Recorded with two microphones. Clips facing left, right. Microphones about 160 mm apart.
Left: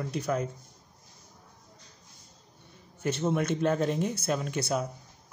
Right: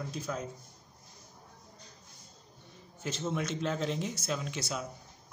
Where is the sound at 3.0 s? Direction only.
60° left (ahead or behind).